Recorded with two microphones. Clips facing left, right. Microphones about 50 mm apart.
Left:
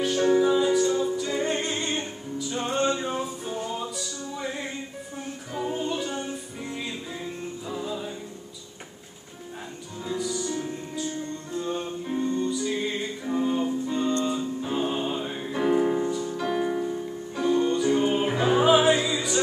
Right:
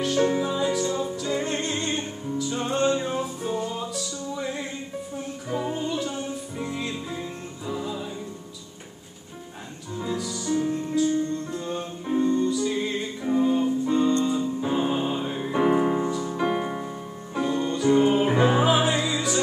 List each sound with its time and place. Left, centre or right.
0.2 s music: centre
0.7 s music: centre
5.5 s music: centre
5.8 s music: centre
7.6 s music: centre
10.1 s music: centre
17.6 s music: centre
17.8 s music: centre
18.7 s music: centre